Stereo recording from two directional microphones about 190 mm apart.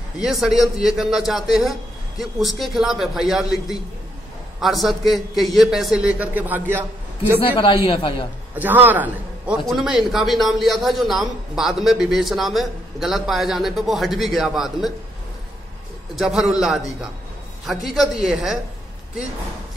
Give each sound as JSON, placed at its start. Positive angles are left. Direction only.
{"t": 0.2, "sound": "a man's voice", "side_deg": 0}
{"t": 7.4, "sound": "a man's voice", "side_deg": 30}
{"t": 8.5, "sound": "a man's voice", "side_deg": -10}
{"t": 16.2, "sound": "a man's voice", "side_deg": 0}